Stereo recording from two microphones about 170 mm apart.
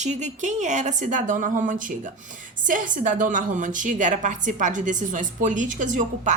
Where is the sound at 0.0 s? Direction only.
45° right (ahead or behind).